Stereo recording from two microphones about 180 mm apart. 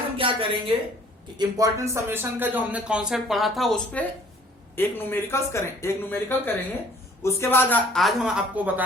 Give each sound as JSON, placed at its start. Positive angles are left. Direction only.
{"t": 0.2, "sound": "a woman's voice", "side_deg": -30}
{"t": 7.9, "sound": "a woman's voice", "side_deg": 0}